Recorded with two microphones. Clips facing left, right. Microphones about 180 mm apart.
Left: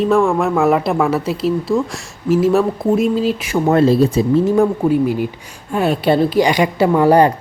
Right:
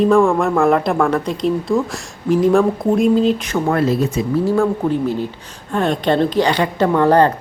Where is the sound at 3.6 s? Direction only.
25° left (ahead or behind).